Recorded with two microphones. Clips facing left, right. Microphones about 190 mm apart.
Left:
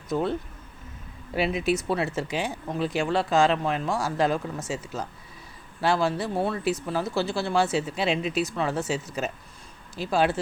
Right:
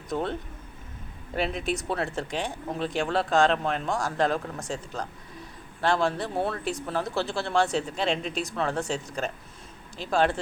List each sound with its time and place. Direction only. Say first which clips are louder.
0.1 s speech: left 3 dB; 5° left (ahead or behind)
1.4 s speech: left 4 dB; 5° left (ahead or behind)